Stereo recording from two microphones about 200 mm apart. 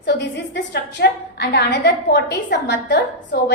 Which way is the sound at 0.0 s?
60° left (ahead or behind).